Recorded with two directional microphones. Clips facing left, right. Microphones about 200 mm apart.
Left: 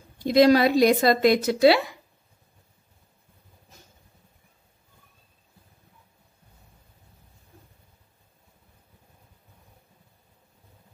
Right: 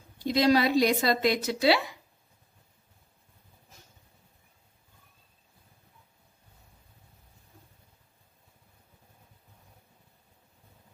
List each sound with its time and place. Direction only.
0.3 s a woman's voice: 50° left (ahead or behind)